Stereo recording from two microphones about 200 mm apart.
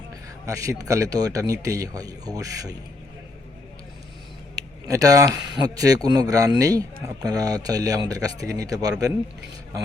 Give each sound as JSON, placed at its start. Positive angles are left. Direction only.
{"t": 0.1, "sound": "speech", "side_deg": -15}
{"t": 4.9, "sound": "speech", "side_deg": -15}